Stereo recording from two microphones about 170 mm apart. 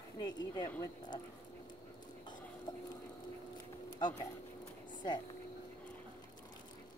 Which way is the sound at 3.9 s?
25° left (ahead or behind).